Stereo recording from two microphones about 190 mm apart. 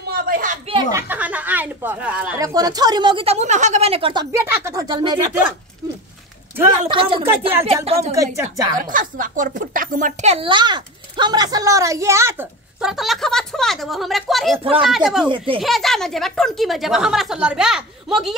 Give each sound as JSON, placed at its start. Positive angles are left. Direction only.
{"t": 0.1, "sound": "a sound", "side_deg": -50}
{"t": 0.9, "sound": "speech", "side_deg": -10}
{"t": 2.3, "sound": "speech", "side_deg": -20}
{"t": 6.9, "sound": "a woman's voice", "side_deg": -25}
{"t": 8.7, "sound": "speech", "side_deg": -45}
{"t": 12.8, "sound": "a woman's voice", "side_deg": 0}
{"t": 14.6, "sound": "speech", "side_deg": -30}
{"t": 14.9, "sound": "a woman's voice", "side_deg": 0}
{"t": 15.2, "sound": "speech", "side_deg": -25}
{"t": 15.6, "sound": "a woman's voice", "side_deg": 0}